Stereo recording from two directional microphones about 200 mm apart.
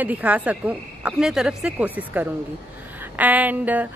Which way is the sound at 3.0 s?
10° right (ahead or behind).